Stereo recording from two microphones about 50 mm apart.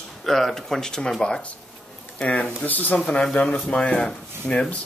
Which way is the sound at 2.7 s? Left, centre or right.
Left.